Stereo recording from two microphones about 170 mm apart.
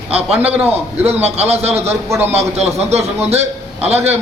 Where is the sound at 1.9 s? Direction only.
15° right (ahead or behind).